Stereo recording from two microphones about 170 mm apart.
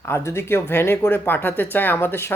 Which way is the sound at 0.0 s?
15° left (ahead or behind).